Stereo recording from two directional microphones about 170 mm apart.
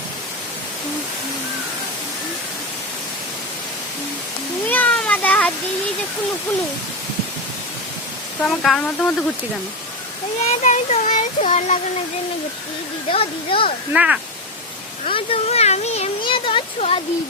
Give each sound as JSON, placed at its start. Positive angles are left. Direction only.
{"t": 4.6, "sound": "a sound", "side_deg": 10}
{"t": 8.4, "sound": "speech", "side_deg": 0}
{"t": 10.4, "sound": "speech", "side_deg": 45}
{"t": 13.1, "sound": "speech", "side_deg": 35}
{"t": 13.9, "sound": "speech", "side_deg": -5}
{"t": 15.0, "sound": "speech", "side_deg": 35}